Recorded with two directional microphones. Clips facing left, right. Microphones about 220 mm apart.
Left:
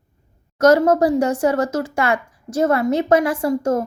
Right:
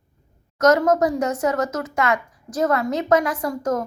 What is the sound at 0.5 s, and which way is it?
Speech, 30° left (ahead or behind).